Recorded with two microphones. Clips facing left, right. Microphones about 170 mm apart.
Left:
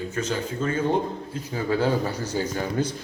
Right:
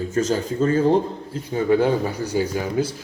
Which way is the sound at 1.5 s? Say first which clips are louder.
Right 5 dB; 20° right (ahead or behind).